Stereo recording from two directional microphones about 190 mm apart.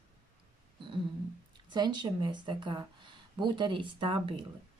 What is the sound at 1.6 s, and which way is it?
Speech, 25° right (ahead or behind).